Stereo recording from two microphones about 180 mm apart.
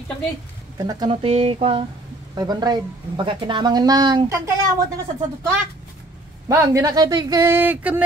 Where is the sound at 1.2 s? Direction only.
35° right (ahead or behind).